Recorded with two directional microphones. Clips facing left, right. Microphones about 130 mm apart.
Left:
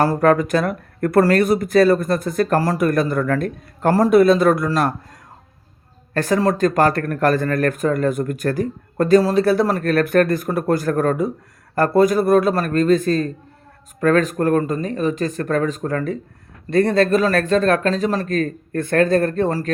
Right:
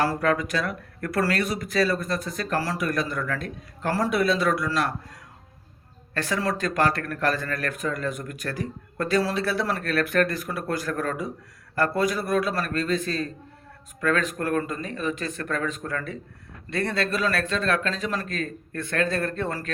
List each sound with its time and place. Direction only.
0.0 s speech: 50° left (ahead or behind)